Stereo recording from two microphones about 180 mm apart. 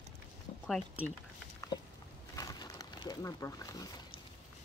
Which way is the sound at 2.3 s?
20° left (ahead or behind).